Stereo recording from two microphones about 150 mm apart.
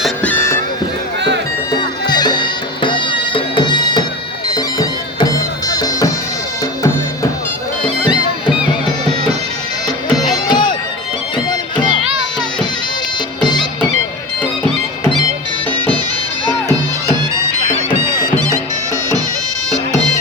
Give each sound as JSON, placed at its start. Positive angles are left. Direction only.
{"t": 0.2, "sound": "music", "side_deg": 15}
{"t": 1.8, "sound": "music", "side_deg": 30}
{"t": 4.5, "sound": "bagpipes", "side_deg": 25}
{"t": 10.3, "sound": "music", "side_deg": 30}
{"t": 13.4, "sound": "bagpipes", "side_deg": 30}
{"t": 18.2, "sound": "music", "side_deg": -20}